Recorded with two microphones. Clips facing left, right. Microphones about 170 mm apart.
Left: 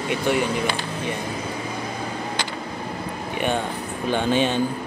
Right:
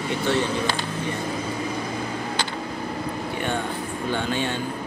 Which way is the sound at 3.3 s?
20° left (ahead or behind).